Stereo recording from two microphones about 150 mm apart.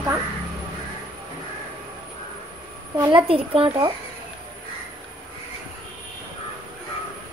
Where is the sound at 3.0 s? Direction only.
35° right (ahead or behind).